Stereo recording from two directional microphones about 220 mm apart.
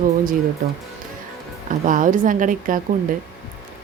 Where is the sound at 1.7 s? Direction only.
35° right (ahead or behind).